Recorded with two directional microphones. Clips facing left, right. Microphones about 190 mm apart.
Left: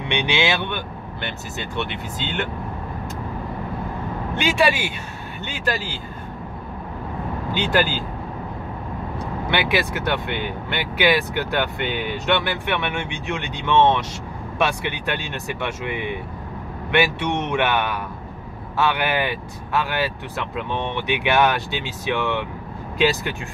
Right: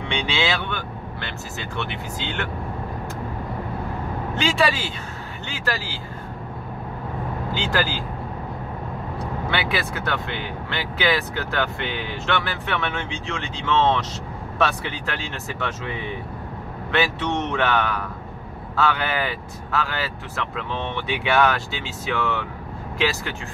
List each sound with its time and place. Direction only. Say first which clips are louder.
0.1 s speech: left 3 dB; 20° left (ahead or behind)
4.4 s speech: left 2 dB; 15° left (ahead or behind)
7.5 s speech: left 4 dB; 20° left (ahead or behind)
9.5 s speech: left 5 dB; 15° left (ahead or behind)